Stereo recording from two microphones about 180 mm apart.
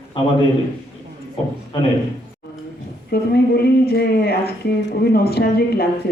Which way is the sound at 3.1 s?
60° left (ahead or behind).